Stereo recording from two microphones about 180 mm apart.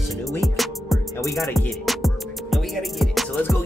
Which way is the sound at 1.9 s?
Centre (ahead or behind).